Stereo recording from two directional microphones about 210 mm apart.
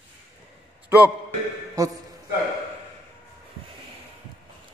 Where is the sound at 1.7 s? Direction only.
15° right (ahead or behind).